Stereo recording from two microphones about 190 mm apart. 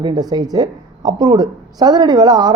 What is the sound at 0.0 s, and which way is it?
Speech, 20° right (ahead or behind).